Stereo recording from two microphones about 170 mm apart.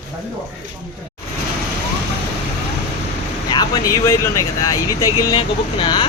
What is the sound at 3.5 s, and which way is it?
Speech, 25° left (ahead or behind).